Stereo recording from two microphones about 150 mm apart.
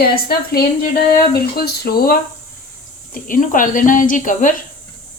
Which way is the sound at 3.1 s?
65° left (ahead or behind).